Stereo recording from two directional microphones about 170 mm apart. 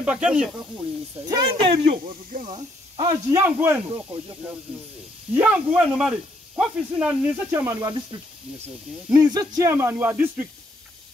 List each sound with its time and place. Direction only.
0.0 s speech: 5° right (ahead or behind)
1.2 s speech: 25° right (ahead or behind)
1.9 s speech: 50° right (ahead or behind)
2.4 s speech: 30° right (ahead or behind)
3.4 s a man's voice: 10° right (ahead or behind)
5.3 s a man's voice: 10° right (ahead or behind)
9.1 s a man's voice: 20° right (ahead or behind)